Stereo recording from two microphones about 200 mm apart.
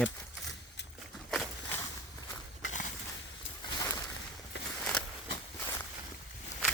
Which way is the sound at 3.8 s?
15° left (ahead or behind).